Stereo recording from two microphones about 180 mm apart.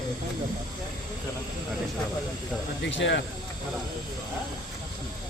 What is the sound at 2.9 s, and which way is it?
Speech, 80° left.